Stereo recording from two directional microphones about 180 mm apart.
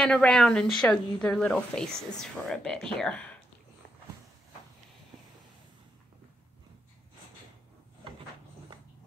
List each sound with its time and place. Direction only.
0.0 s a woman's voice: 5° left (ahead or behind)